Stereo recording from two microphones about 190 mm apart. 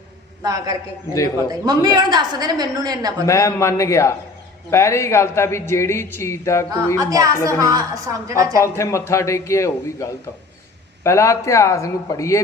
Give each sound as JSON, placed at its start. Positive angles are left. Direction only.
{"t": 0.4, "sound": "a woman's voice", "side_deg": -20}
{"t": 3.2, "sound": "a man's voice", "side_deg": 15}
{"t": 7.0, "sound": "a woman's voice", "side_deg": -20}
{"t": 8.6, "sound": "a man's voice", "side_deg": 15}